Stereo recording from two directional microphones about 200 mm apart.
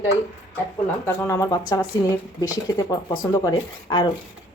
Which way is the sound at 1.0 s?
15° left (ahead or behind).